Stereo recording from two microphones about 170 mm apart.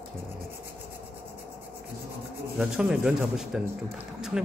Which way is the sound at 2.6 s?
5° right (ahead or behind).